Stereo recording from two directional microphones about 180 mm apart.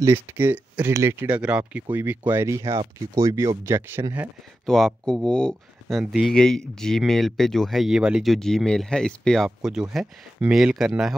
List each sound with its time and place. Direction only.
0.0 s speech: 15° right (ahead or behind)
4.6 s speech: centre (ahead or behind)